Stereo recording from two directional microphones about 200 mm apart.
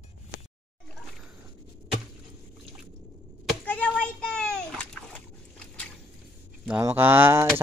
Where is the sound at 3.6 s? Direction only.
5° left (ahead or behind).